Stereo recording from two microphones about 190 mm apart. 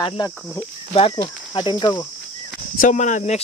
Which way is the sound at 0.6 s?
25° left (ahead or behind).